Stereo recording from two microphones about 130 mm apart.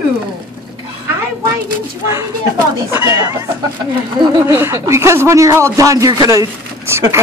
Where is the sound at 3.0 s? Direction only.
25° right (ahead or behind).